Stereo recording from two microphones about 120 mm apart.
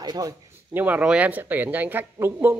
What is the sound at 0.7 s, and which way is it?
Speech, 15° right (ahead or behind).